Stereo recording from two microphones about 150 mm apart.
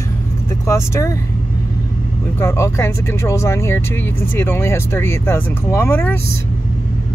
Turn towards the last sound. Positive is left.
turn(degrees=15)  # may be behind; listen again after turning